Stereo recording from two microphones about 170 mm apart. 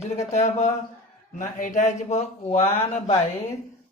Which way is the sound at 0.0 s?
40° left (ahead or behind).